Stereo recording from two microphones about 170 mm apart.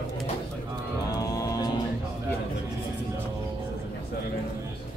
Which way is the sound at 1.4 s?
20° left (ahead or behind).